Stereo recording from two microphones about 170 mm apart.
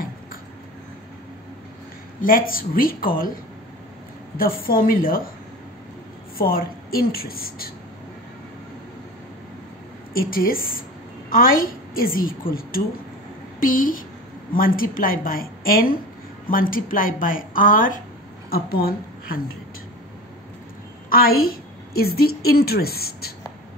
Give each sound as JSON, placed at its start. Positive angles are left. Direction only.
{"t": 2.2, "sound": "speech", "side_deg": 55}
{"t": 4.4, "sound": "speech", "side_deg": 60}
{"t": 6.3, "sound": "speech", "side_deg": 60}
{"t": 10.1, "sound": "a woman's voice", "side_deg": 60}
{"t": 21.1, "sound": "a woman's voice", "side_deg": 60}